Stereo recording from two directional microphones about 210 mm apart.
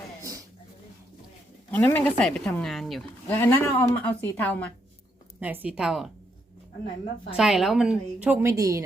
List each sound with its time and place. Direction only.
0.2 s a sound: 15° right (ahead or behind)
1.7 s speech: 10° left (ahead or behind)
5.4 s a woman's voice: 10° right (ahead or behind)
7.3 s a woman's voice: centre (ahead or behind)